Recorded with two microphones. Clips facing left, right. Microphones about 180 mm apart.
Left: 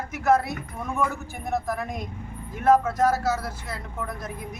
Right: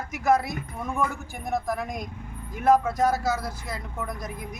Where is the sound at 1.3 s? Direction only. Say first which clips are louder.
Even; 5° left (ahead or behind).